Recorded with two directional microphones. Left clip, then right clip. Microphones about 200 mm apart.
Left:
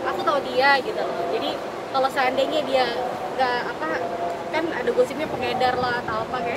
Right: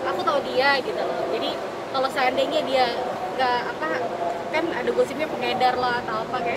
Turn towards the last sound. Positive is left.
turn(degrees=5)  # may be behind; listen again after turning